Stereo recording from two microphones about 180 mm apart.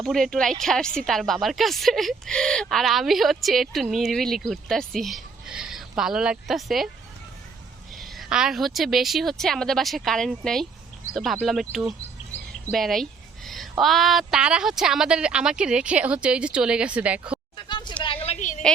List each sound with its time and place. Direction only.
0.0 s a woman's voice: centre (ahead or behind)
7.9 s a woman's voice: centre (ahead or behind)
17.7 s a sound: 25° left (ahead or behind)
18.0 s a woman's voice: 30° left (ahead or behind)